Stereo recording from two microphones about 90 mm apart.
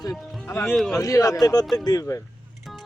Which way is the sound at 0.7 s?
Centre (ahead or behind).